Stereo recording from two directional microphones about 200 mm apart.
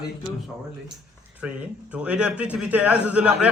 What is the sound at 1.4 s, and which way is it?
A man's voice, 5° right (ahead or behind).